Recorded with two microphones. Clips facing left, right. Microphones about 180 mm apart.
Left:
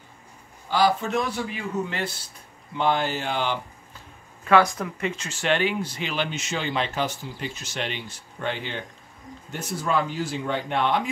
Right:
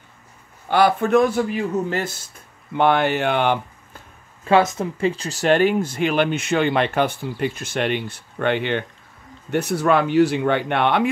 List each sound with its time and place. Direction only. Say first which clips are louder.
0.7 s speech: right 5 dB; 60° right (ahead or behind); by 2.2 s 45° right (ahead or behind)
2.7 s speech: right 6 dB; 60° right (ahead or behind)
4.5 s speech: right 3 dB; 25° right (ahead or behind); by 11.1 s 65° right (ahead or behind)